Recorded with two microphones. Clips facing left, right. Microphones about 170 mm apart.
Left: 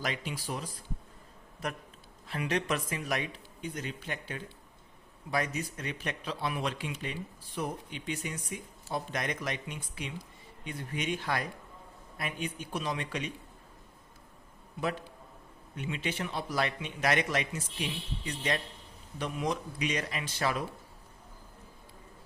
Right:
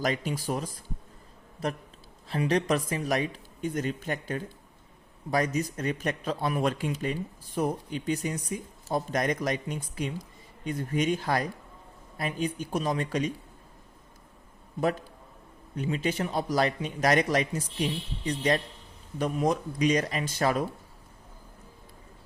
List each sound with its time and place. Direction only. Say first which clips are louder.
0.0 s speech: right 7 dB; 45° right (ahead or behind)
2.2 s speech: right 6 dB; 35° right (ahead or behind)
15.7 s speech: right 7 dB; 40° right (ahead or behind)